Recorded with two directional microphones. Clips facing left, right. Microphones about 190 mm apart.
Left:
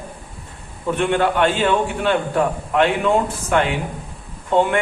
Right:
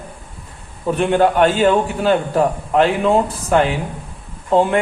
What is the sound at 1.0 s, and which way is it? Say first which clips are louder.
A man's voice: right 4 dB; 40° right (ahead or behind).